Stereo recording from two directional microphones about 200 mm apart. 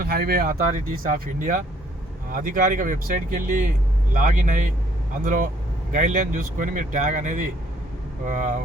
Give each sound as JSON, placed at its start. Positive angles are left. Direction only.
{"t": 0.0, "sound": "speech", "side_deg": -50}